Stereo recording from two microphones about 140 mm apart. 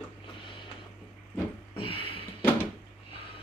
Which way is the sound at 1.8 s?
40° left (ahead or behind).